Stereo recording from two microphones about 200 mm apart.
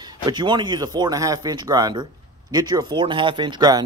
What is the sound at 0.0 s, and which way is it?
Speech, 20° right (ahead or behind).